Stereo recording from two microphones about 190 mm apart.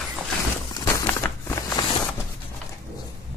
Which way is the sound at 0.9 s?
15° left (ahead or behind).